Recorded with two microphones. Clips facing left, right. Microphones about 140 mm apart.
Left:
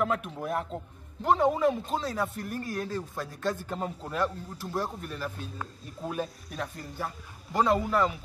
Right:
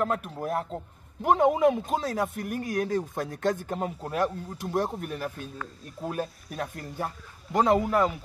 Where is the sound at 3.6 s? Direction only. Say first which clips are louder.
Right 3 dB; 10° right (ahead or behind).